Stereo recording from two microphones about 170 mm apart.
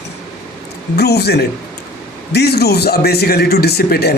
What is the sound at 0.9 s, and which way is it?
A man's voice, 75° left (ahead or behind).